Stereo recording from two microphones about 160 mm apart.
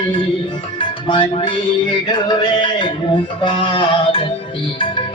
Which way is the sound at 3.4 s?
30° left (ahead or behind).